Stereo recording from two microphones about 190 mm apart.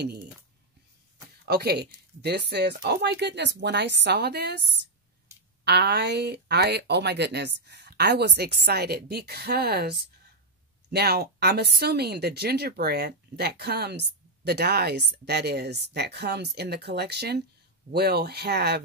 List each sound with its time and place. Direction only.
1.5 s speech: 55° right (ahead or behind)